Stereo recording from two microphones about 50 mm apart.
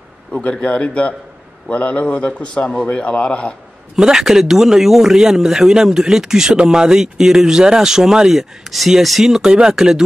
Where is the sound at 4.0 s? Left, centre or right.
Centre.